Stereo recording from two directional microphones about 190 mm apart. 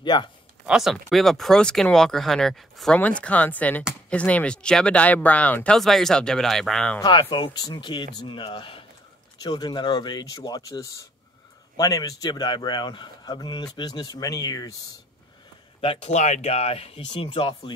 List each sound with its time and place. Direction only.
0.0 s speech: 25° left (ahead or behind)
0.7 s speech: centre (ahead or behind)
7.0 s a man's voice: 25° left (ahead or behind)
15.8 s speech: 30° left (ahead or behind)